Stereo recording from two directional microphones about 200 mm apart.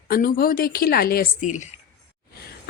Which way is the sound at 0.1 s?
45° left (ahead or behind).